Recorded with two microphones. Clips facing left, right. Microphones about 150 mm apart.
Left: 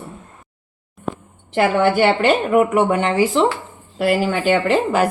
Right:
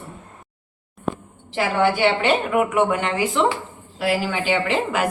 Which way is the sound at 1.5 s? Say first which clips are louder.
Left 4 dB; 55° left (ahead or behind).